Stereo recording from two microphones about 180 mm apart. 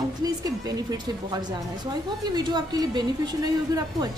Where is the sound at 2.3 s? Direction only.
25° right (ahead or behind).